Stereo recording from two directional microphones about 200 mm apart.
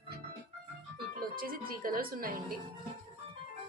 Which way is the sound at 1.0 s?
45° right (ahead or behind).